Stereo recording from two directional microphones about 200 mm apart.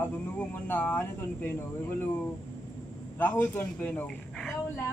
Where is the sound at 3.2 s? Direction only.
10° left (ahead or behind).